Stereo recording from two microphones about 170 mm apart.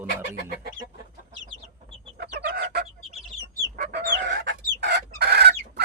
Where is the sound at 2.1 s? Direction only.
75° right (ahead or behind).